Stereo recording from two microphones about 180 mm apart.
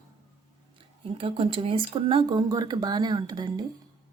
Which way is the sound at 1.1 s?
30° right (ahead or behind).